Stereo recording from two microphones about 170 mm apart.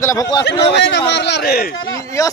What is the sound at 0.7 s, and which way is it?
A man's voice, 90° left.